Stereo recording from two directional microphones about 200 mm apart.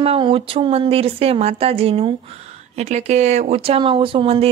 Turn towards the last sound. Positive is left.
turn(degrees=-30)  # may be behind; listen again after turning